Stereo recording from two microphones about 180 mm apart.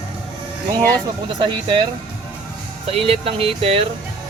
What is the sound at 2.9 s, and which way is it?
Speech, 30° right (ahead or behind).